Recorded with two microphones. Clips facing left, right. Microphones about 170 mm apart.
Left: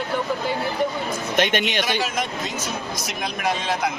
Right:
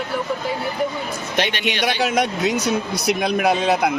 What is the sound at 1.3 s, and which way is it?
Speech, 45° left (ahead or behind).